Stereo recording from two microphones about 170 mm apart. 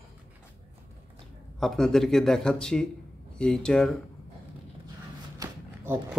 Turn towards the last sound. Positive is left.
turn(degrees=-15)  # may be behind; listen again after turning